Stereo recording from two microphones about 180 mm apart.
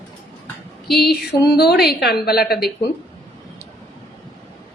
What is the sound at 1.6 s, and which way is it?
A woman's voice, 60° left (ahead or behind).